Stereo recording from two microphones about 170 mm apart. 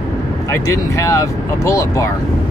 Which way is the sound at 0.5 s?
15° left (ahead or behind).